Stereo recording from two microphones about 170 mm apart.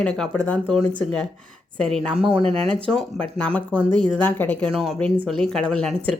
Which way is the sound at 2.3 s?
35° right (ahead or behind).